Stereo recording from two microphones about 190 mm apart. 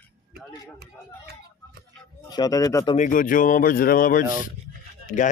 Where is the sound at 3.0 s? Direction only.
45° left (ahead or behind).